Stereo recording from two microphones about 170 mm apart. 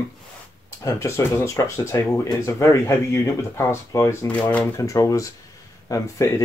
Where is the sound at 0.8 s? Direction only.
15° left (ahead or behind).